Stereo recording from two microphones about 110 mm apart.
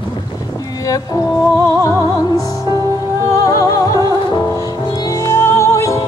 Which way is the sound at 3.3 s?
35° left (ahead or behind).